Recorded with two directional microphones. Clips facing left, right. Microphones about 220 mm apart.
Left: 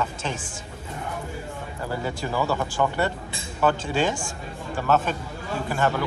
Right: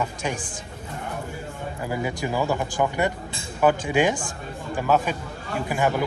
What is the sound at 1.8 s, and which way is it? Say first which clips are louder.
A man's voice: right 2 dB; 15° right (ahead or behind).